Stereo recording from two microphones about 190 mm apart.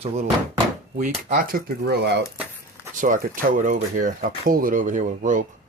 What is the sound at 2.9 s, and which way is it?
Speech, 45° right (ahead or behind).